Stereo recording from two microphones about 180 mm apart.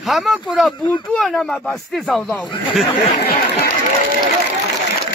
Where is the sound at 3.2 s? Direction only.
60° left (ahead or behind).